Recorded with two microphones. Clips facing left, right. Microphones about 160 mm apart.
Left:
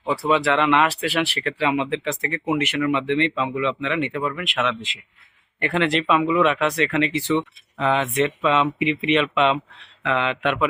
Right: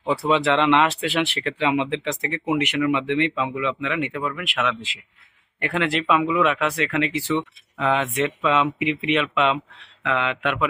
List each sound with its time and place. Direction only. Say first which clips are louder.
0.2 s speech: left 1 dB; 20° right (ahead or behind); by 10.7 s 5° right (ahead or behind)